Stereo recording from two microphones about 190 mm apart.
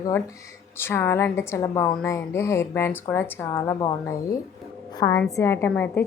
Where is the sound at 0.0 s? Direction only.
15° left (ahead or behind).